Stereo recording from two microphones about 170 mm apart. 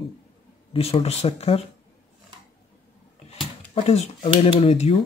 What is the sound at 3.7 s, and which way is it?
Speech, 40° left (ahead or behind).